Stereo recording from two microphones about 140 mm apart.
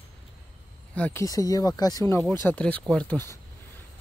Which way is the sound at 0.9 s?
10° left (ahead or behind).